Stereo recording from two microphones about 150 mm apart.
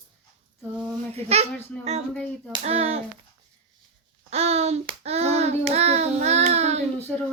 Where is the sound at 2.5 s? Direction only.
40° right (ahead or behind).